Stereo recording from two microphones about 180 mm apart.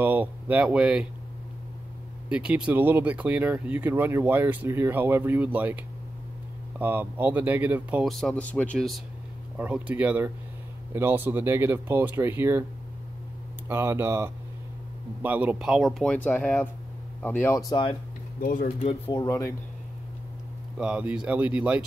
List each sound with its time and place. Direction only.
0.0 s speech: 10° right (ahead or behind)
2.2 s speech: 5° right (ahead or behind)
6.8 s speech: 10° right (ahead or behind)
13.7 s speech: 15° right (ahead or behind); by 17.9 s 20° left (ahead or behind)
18.4 s speech: 50° left (ahead or behind)
18.9 s speech: 30° left (ahead or behind)
19.2 s speech: 15° left (ahead or behind)
20.7 s speech: 5° right (ahead or behind)